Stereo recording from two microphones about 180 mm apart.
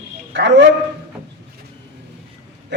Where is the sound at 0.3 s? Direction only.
75° right (ahead or behind).